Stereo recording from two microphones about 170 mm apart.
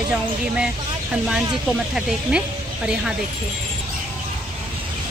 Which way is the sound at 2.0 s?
5° right (ahead or behind).